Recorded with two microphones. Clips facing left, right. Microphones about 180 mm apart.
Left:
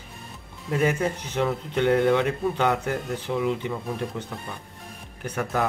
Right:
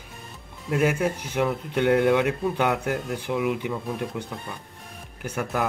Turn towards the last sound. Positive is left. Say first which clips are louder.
# left 1 dB
turn(degrees=-5)  # may be behind; listen again after turning